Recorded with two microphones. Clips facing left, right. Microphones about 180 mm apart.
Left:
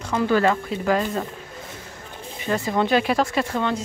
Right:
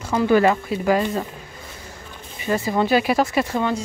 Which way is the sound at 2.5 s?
5° right (ahead or behind).